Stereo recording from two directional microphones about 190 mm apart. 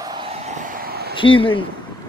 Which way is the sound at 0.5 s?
55° right (ahead or behind).